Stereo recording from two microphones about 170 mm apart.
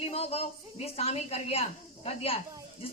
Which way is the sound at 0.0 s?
35° left (ahead or behind).